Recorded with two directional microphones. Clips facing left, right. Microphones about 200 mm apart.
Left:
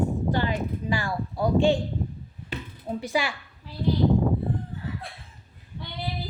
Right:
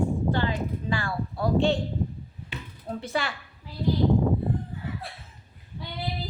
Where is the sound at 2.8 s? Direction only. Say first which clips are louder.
Left 2 dB; 10° left (ahead or behind).